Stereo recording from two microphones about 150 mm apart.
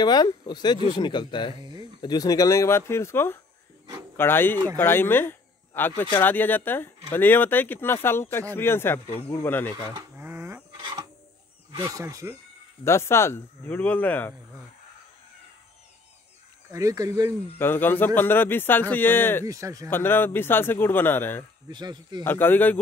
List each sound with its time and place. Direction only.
0.0 s speech: 25° left (ahead or behind)
1.6 s a sound: 30° right (ahead or behind)
2.0 s speech: 25° left (ahead or behind)
9.9 s a sound: 15° right (ahead or behind)
11.7 s speech: 20° right (ahead or behind)
12.8 s speech: 15° left (ahead or behind)
16.7 s speech: 20° right (ahead or behind)
17.6 s speech: 15° left (ahead or behind)
19.4 s speech: 20° right (ahead or behind)
19.9 s speech: 15° left (ahead or behind)
21.6 s speech: 30° right (ahead or behind)
22.2 s speech: 15° left (ahead or behind)